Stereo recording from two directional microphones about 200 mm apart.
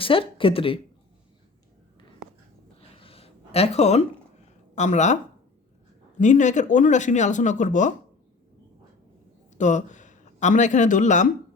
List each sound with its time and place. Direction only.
0.0 s speech: 25° left (ahead or behind)
2.9 s a sound: 30° left (ahead or behind)
4.7 s speech: 35° left (ahead or behind)
6.1 s speech: 35° left (ahead or behind)
9.6 s speech: 40° left (ahead or behind)